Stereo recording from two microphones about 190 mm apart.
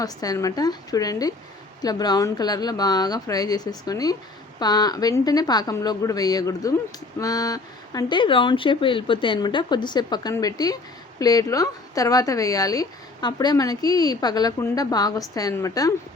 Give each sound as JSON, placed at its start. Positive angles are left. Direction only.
{"t": 0.0, "sound": "speech", "side_deg": 20}